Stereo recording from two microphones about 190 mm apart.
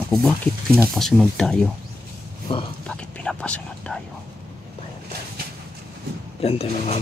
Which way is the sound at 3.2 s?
5° left (ahead or behind).